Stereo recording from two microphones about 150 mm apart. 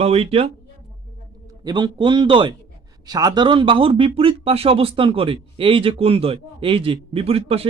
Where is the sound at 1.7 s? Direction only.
30° right (ahead or behind).